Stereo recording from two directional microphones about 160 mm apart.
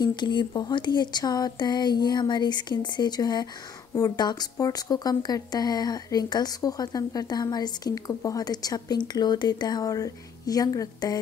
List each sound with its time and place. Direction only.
0.0 s speech: 30° left (ahead or behind)